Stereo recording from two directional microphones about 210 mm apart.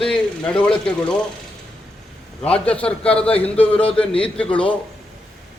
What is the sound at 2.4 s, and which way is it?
A man's voice, 5° left (ahead or behind).